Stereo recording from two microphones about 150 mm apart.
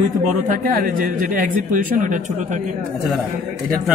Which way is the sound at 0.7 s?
70° right (ahead or behind).